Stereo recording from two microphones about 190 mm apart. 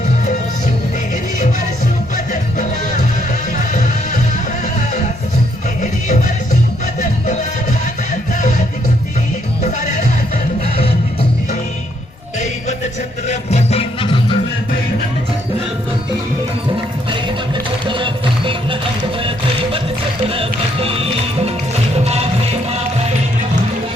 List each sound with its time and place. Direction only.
2.1 s music: 40° left (ahead or behind)
3.7 s music: 40° left (ahead or behind)
5.8 s music: 40° left (ahead or behind)
8.4 s music: 40° left (ahead or behind)
9.8 s music: 40° left (ahead or behind)
13.2 s music: 35° left (ahead or behind)
17.8 s music: 25° right (ahead or behind)
20.2 s music: 30° right (ahead or behind)